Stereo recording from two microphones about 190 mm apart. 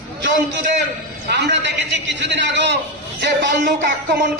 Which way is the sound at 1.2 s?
60° right (ahead or behind).